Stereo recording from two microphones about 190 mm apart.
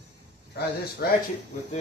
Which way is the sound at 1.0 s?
60° left (ahead or behind).